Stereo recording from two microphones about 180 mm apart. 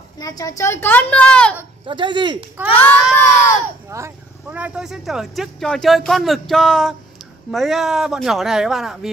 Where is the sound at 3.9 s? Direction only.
10° right (ahead or behind).